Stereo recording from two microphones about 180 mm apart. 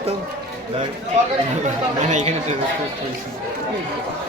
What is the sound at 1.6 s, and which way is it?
Speech, 40° right (ahead or behind).